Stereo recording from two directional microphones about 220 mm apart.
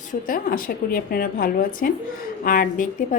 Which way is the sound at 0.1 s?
40° left (ahead or behind).